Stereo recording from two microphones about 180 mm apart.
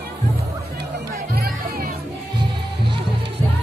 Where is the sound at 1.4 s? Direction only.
60° right (ahead or behind).